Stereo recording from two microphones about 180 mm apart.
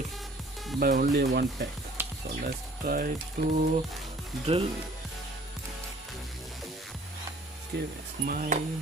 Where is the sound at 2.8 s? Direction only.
55° right (ahead or behind).